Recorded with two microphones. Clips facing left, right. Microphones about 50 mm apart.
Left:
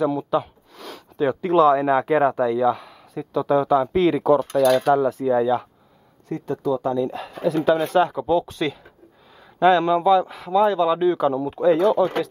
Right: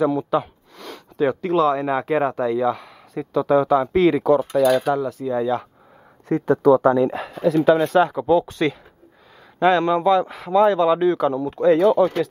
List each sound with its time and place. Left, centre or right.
0.0 s speech: centre
5.2 s speech: centre
6.2 s speech: right
6.5 s speech: right
7.2 s speech: centre